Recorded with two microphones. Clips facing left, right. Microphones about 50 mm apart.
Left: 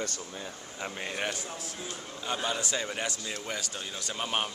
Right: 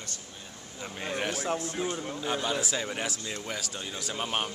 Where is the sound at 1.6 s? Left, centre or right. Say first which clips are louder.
Right 8 dB; right.